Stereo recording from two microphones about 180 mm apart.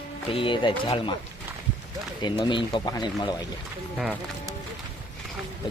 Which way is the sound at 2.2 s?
25° left (ahead or behind).